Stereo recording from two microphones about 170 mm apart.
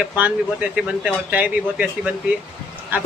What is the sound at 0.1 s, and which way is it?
Speech, 10° right (ahead or behind).